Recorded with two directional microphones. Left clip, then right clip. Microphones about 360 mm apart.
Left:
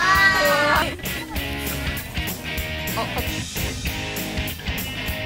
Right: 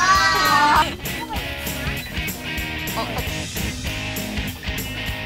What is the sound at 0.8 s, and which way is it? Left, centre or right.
Music, centre.